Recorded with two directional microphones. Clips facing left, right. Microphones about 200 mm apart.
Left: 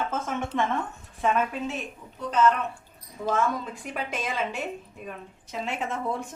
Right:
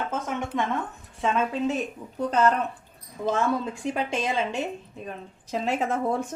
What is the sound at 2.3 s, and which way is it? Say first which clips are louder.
Speech: even; 40° right (ahead or behind).